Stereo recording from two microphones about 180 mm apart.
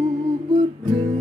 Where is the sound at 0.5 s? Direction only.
25° right (ahead or behind).